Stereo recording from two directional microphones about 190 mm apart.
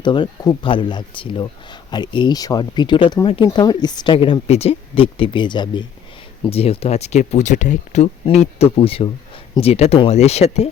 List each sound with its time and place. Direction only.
0.0 s speech: 25° left (ahead or behind)